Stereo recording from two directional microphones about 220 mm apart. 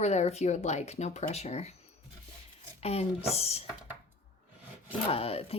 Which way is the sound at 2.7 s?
30° left (ahead or behind).